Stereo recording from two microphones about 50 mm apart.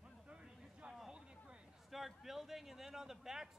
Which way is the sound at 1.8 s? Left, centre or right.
Centre.